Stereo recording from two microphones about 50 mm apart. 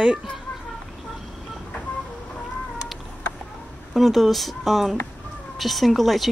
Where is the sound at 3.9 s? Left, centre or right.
Centre.